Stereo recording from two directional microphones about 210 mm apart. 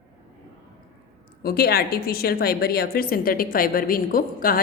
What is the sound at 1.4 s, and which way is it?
A woman's voice, 45° left (ahead or behind).